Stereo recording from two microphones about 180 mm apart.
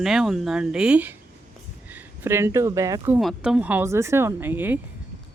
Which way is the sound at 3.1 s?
5° right (ahead or behind).